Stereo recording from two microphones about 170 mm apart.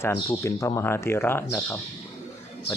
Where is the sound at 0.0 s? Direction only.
15° left (ahead or behind).